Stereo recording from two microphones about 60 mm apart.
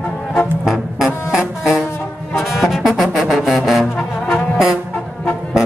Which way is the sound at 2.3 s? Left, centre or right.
Centre.